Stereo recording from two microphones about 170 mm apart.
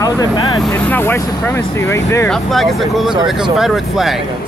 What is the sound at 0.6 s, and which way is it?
Speech, 10° left (ahead or behind).